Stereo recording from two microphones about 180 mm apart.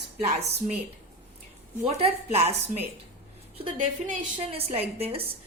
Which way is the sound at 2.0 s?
35° right (ahead or behind).